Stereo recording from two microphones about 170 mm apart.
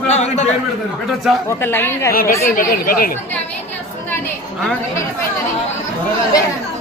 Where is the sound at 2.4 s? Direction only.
55° left (ahead or behind).